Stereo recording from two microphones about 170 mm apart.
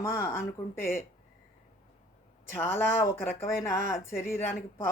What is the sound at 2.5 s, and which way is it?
Speech, 15° left (ahead or behind).